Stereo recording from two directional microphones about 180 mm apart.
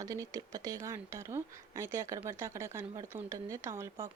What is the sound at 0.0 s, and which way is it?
Speech, 20° right (ahead or behind).